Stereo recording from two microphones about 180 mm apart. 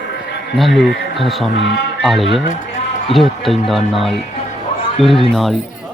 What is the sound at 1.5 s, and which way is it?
Speech, 80° left.